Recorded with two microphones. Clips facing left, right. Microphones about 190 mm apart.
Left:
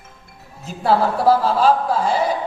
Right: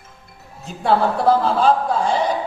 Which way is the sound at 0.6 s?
5° left (ahead or behind).